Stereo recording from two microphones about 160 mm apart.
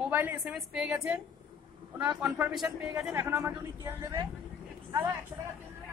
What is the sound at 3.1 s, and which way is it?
Speech, 15° right (ahead or behind).